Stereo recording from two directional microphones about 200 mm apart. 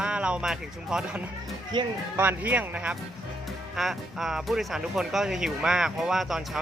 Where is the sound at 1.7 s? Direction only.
25° right (ahead or behind).